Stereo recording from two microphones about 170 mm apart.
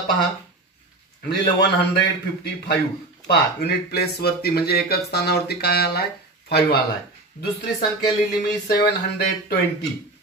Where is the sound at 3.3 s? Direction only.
75° left (ahead or behind).